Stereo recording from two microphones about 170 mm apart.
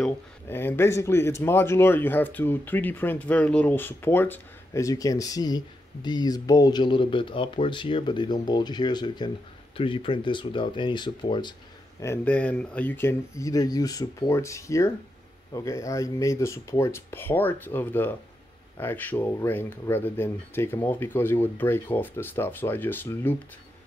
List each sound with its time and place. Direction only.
0.5 s speech: 15° left (ahead or behind)
12.0 s speech: 10° left (ahead or behind)